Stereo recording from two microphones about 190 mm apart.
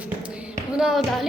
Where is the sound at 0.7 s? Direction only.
5° right (ahead or behind).